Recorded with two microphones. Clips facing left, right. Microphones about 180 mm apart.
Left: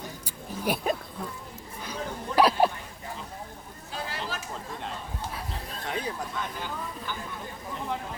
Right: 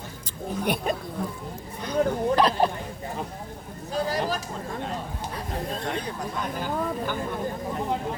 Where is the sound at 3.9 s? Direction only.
40° right (ahead or behind).